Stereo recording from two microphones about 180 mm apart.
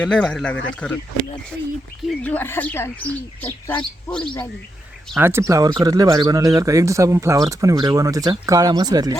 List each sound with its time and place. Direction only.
0.0 s speech: 5° left (ahead or behind)
2.0 s speech: 10° left (ahead or behind)
5.1 s speech: 15° right (ahead or behind)